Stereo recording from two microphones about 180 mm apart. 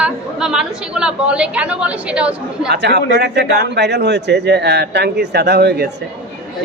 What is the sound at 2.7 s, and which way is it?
A man's voice, 70° right (ahead or behind).